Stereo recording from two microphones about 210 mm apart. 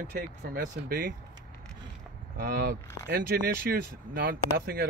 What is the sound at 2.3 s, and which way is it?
Speech, 45° right (ahead or behind).